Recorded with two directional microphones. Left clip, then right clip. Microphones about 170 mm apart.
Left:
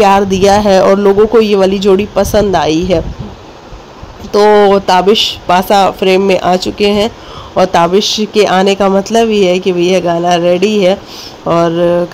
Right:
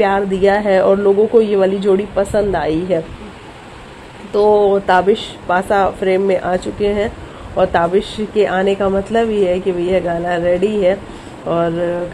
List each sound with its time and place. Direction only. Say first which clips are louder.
0.0 s speech: left 6 dB; 30° left (ahead or behind)
4.3 s speech: left 6 dB; 35° left (ahead or behind)